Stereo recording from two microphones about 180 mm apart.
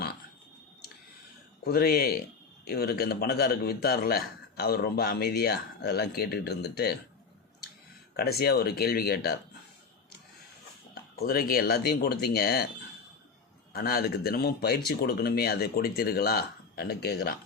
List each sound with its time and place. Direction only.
1.6 s a man's voice: 60° left (ahead or behind)
8.1 s a man's voice: 60° left (ahead or behind)
11.2 s a man's voice: 55° left (ahead or behind)
13.7 s a man's voice: 55° left (ahead or behind)